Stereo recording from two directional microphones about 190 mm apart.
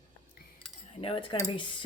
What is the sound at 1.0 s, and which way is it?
Speech, 30° left (ahead or behind).